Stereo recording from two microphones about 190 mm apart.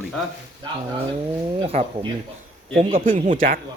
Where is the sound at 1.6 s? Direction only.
30° right (ahead or behind).